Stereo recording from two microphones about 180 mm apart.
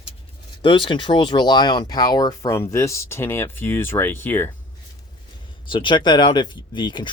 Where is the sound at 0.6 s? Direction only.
25° left (ahead or behind).